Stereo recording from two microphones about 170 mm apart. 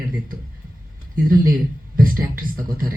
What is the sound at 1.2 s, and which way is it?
Speech, 55° right (ahead or behind).